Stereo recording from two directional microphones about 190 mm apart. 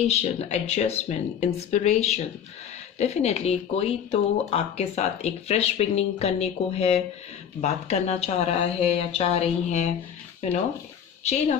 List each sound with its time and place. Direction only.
0.0 s speech: 35° left (ahead or behind)